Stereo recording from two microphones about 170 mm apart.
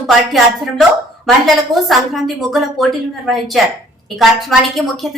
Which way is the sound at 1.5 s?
Centre (ahead or behind).